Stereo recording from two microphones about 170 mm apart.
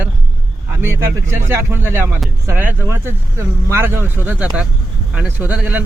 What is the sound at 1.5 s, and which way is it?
Speech, 15° right (ahead or behind).